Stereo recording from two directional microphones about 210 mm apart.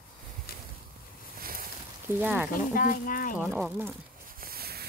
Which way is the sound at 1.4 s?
45° right (ahead or behind).